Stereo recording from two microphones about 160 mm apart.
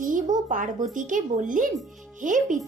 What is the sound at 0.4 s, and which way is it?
A woman's voice, 55° right (ahead or behind).